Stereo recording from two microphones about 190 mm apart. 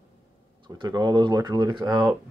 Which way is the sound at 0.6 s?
20° right (ahead or behind).